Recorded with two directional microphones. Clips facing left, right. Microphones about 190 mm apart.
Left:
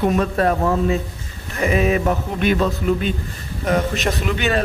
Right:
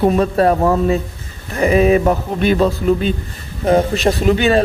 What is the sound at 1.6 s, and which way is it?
A man's voice, 35° right (ahead or behind).